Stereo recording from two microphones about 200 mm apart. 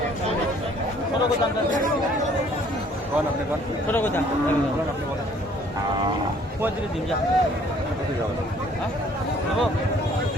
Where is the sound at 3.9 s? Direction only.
10° left (ahead or behind).